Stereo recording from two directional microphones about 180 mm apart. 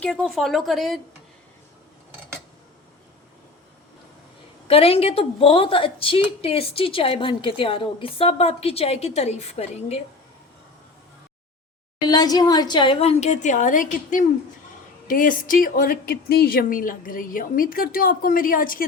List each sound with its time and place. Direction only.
0.0 s speech: 5° left (ahead or behind)
4.7 s a woman's voice: 35° left (ahead or behind)
12.0 s a woman's voice: 20° left (ahead or behind); by 18.9 s 50° left (ahead or behind)